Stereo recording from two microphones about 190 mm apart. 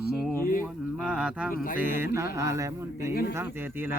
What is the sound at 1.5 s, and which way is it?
Speech, 45° left (ahead or behind).